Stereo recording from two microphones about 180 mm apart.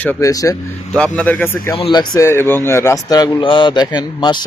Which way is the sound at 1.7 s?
25° left (ahead or behind).